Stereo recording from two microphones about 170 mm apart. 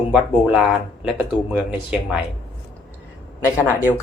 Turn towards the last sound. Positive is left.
turn(degrees=15)  # may be behind; listen again after turning